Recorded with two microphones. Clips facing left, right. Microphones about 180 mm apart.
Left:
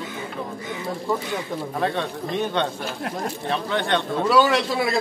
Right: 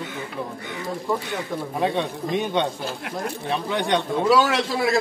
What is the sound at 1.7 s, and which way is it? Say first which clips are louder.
Speech: right 2 dB; 15° right (ahead or behind).